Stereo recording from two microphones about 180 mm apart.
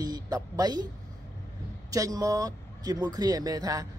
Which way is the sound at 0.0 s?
20° right (ahead or behind).